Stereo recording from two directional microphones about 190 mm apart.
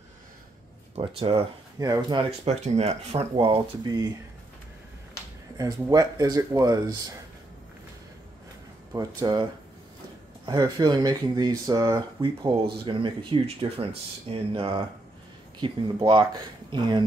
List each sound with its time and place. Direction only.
0.9 s speech: 30° right (ahead or behind)
1.8 s speech: 20° right (ahead or behind)
2.6 s speech: 35° right (ahead or behind)
5.6 s speech: 20° right (ahead or behind)
8.9 s speech: 20° right (ahead or behind)